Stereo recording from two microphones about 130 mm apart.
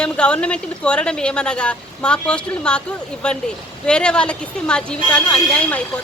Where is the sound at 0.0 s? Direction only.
10° left (ahead or behind).